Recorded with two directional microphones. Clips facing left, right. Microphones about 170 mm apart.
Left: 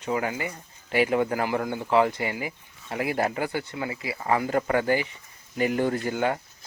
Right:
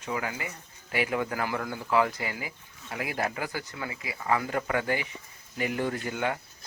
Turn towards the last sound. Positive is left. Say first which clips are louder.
# left 5 dB
turn(degrees=35)  # may be behind; listen again after turning